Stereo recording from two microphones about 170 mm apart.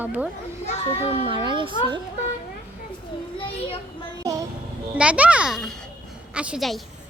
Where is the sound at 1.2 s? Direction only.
30° right (ahead or behind).